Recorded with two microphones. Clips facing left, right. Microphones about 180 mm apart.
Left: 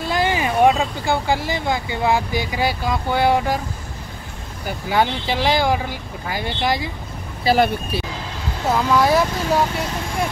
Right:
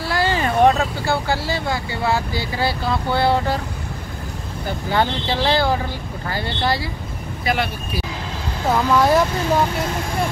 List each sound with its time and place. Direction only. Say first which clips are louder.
0.0 s speech: even; 20° left (ahead or behind)
4.6 s speech: left 1 dB; 10° left (ahead or behind)
7.4 s speech: left 6 dB; 40° left (ahead or behind)
8.6 s speech: right 1 dB; centre (ahead or behind)